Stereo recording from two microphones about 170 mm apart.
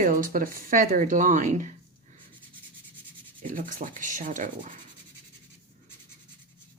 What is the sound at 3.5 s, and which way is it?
Speech, 50° right (ahead or behind).